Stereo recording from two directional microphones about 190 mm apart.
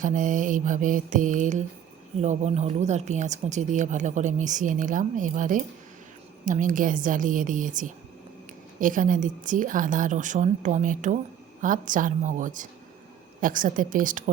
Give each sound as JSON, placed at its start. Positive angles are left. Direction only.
{"t": 0.0, "sound": "a woman's voice", "side_deg": -45}